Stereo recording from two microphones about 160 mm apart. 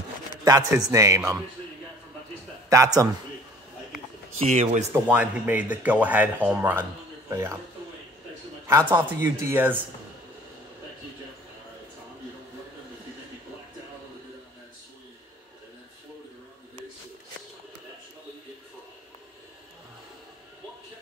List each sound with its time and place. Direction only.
0.5 s a man's voice: 20° right (ahead or behind)
2.7 s a man's voice: 20° right (ahead or behind)
4.5 s speech: 45° right (ahead or behind)
4.9 s speech: 10° right (ahead or behind)
8.6 s a man's voice: 20° right (ahead or behind)